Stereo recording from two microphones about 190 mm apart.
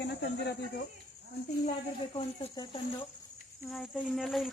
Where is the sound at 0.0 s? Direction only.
60° left (ahead or behind).